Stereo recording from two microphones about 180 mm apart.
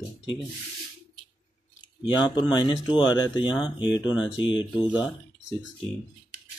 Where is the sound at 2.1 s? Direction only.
25° left (ahead or behind).